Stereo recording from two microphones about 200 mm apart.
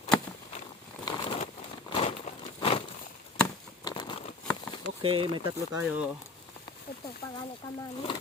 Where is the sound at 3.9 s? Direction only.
20° left (ahead or behind).